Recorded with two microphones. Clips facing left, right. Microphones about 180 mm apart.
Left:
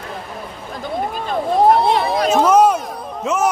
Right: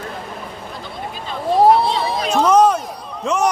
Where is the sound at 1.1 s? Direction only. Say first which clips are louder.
Right 2 dB; 50° left (ahead or behind).